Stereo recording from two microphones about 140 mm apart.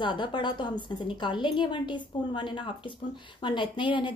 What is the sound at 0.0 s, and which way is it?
A woman's voice, 35° left (ahead or behind).